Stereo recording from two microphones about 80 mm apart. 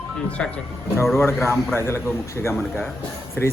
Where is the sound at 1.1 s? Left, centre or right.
Left.